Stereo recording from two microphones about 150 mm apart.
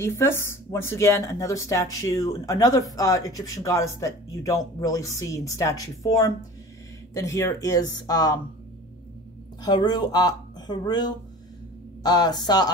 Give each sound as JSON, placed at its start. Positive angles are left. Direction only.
{"t": 0.0, "sound": "speech", "side_deg": 15}
{"t": 9.6, "sound": "speech", "side_deg": 25}